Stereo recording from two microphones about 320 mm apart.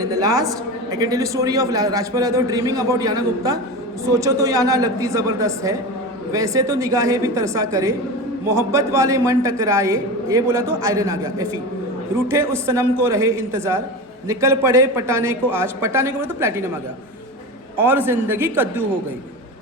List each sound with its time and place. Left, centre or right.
0.0 s a woman's voice: centre
17.7 s a woman's voice: centre